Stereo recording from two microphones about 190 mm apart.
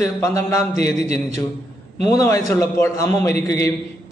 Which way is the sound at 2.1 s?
15° left (ahead or behind).